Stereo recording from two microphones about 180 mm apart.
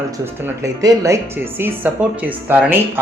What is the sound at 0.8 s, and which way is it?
Speech, 15° right (ahead or behind).